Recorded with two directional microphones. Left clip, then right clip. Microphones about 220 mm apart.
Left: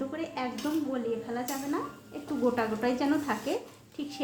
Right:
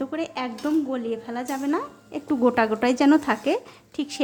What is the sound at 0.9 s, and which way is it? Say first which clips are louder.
Speech: right 4 dB; 45° right (ahead or behind).